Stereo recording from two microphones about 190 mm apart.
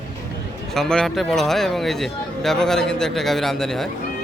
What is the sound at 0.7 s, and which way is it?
Speech, 5° left (ahead or behind).